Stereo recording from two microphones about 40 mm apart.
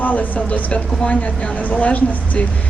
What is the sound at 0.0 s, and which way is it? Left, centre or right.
A woman's voice, left.